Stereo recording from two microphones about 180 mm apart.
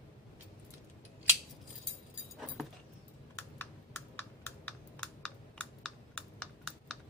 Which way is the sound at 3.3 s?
10° left (ahead or behind).